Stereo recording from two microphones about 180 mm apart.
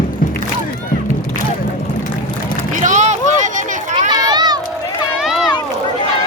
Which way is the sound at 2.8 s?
45° right (ahead or behind).